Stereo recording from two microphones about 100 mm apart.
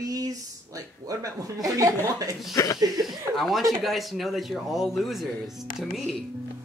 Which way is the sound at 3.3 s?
Centre (ahead or behind).